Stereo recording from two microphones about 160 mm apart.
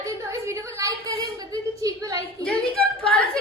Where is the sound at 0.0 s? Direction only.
20° right (ahead or behind).